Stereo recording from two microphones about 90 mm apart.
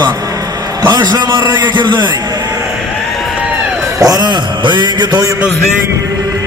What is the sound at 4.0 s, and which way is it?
A man's voice, 45° right (ahead or behind).